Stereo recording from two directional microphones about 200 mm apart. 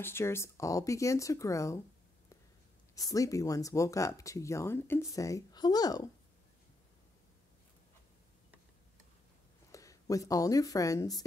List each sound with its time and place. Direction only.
0.0 s speech: 10° left (ahead or behind)
3.0 s speech: 15° left (ahead or behind)
9.7 s speech: 15° left (ahead or behind)